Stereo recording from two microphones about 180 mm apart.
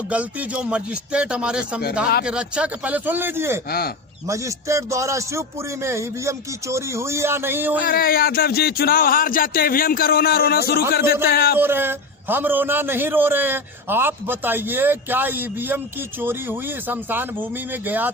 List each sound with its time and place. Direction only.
0.1 s a man's voice: 10° right (ahead or behind)
3.7 s speech: 60° left (ahead or behind)
4.3 s a man's voice: 15° right (ahead or behind)
7.9 s speech: 55° left (ahead or behind)
11.5 s a man's voice: 10° right (ahead or behind)